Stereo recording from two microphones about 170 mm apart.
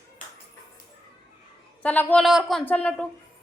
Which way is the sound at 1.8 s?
10° left (ahead or behind).